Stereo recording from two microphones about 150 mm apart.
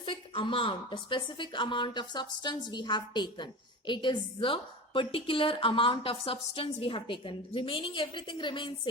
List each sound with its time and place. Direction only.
0.0 s a woman's voice: 35° left (ahead or behind)